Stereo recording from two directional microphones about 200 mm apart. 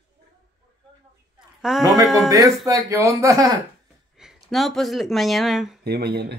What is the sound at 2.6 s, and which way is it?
Speech, 15° right (ahead or behind).